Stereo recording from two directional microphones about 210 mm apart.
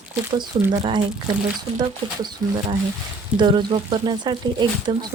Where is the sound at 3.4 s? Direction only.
20° right (ahead or behind).